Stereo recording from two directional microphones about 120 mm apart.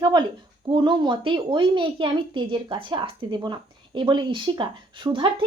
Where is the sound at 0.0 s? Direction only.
35° right (ahead or behind).